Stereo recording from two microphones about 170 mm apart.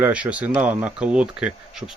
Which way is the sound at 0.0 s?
10° right (ahead or behind).